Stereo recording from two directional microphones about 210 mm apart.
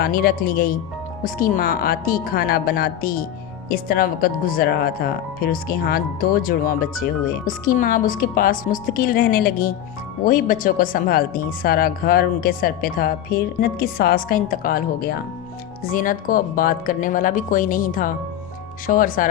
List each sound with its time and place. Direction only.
0.0 s speech: 45° left (ahead or behind)